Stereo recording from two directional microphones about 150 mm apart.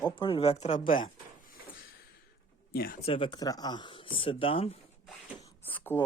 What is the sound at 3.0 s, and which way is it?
Speech, 40° left (ahead or behind).